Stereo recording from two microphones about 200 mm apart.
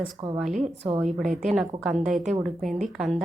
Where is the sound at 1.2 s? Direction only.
40° right (ahead or behind).